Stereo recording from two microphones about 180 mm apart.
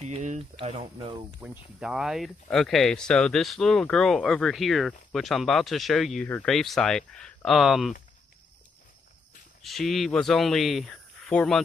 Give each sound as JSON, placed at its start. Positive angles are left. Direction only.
{"t": 0.0, "sound": "a sound", "side_deg": -40}
{"t": 0.6, "sound": "speech", "side_deg": -35}
{"t": 1.4, "sound": "speech", "side_deg": -5}
{"t": 9.6, "sound": "speech", "side_deg": 0}